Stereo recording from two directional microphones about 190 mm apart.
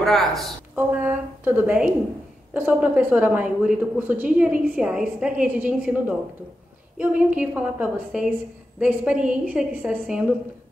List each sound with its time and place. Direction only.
0.0 s a woman's voice: centre (ahead or behind)
0.7 s a woman's voice: 10° right (ahead or behind)